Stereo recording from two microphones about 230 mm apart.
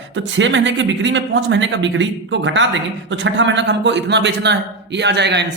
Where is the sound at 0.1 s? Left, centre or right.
Right.